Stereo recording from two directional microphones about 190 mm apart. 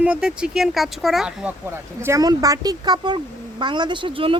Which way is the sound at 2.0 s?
15° right (ahead or behind).